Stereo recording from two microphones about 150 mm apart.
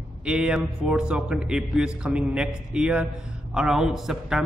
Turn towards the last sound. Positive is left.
turn(degrees=-5)  # may be behind; listen again after turning